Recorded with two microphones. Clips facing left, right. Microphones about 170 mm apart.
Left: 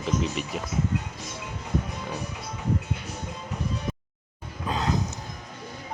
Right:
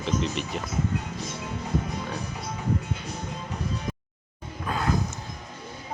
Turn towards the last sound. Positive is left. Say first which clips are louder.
# even
turn(degrees=20)  # may be behind; listen again after turning